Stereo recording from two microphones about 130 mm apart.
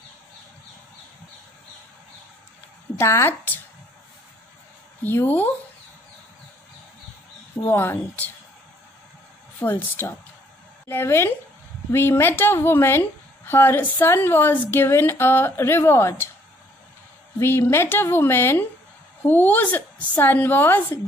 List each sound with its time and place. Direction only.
3.0 s speech: 20° left (ahead or behind)
5.0 s a woman's voice: 15° left (ahead or behind)
7.6 s a woman's voice: 15° left (ahead or behind)
9.6 s a woman's voice: 15° left (ahead or behind)
17.4 s a woman's voice: 20° left (ahead or behind)